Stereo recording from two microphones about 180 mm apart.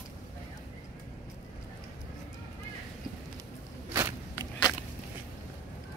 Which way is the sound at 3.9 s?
20° right (ahead or behind).